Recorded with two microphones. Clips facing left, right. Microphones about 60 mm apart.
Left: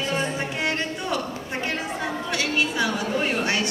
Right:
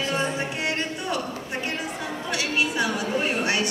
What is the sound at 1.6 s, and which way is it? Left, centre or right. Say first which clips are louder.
Chatter: left 5 dB; left.